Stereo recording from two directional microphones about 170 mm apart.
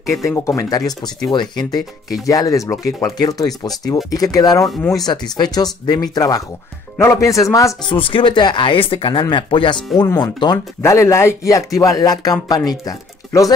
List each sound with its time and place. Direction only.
0.0 s speech: 20° left (ahead or behind)